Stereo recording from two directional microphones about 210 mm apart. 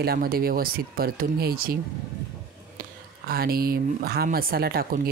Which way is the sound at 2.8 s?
45° right (ahead or behind).